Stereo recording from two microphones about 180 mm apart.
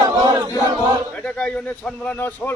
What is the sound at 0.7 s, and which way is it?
Choir, 25° right (ahead or behind).